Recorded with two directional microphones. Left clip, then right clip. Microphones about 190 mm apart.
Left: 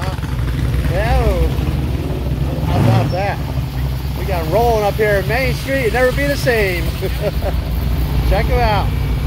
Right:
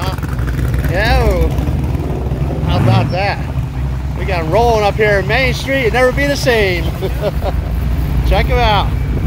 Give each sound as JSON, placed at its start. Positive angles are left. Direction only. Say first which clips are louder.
{"t": 0.9, "sound": "vehicle", "louder": "right 4 dB", "side_deg": -15}
{"t": 4.3, "sound": "speech", "louder": "right 3 dB", "side_deg": -20}
{"t": 4.8, "sound": "speech", "louder": "right 3 dB", "side_deg": -5}
{"t": 8.4, "sound": "speech", "louder": "right 4 dB", "side_deg": -5}